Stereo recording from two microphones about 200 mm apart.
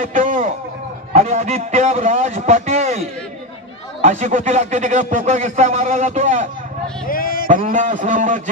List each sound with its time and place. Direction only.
0.0 s speech: 40° right (ahead or behind)
7.1 s speech: 45° left (ahead or behind)
7.4 s speech: 40° right (ahead or behind)